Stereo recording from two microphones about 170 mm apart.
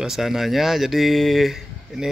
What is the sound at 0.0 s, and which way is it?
Speech, centre (ahead or behind).